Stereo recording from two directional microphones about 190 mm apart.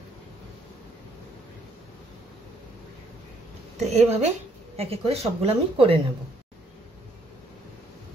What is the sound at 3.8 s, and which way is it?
Speech, 35° right (ahead or behind).